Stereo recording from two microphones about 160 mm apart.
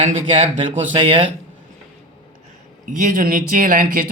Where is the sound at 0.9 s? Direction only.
35° right (ahead or behind).